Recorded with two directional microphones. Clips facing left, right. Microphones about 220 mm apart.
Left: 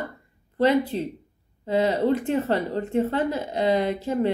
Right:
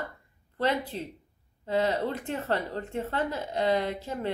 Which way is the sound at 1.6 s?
15° left (ahead or behind).